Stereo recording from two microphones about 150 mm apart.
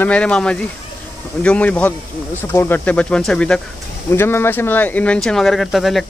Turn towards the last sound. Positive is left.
turn(degrees=0)  # may be behind; listen again after turning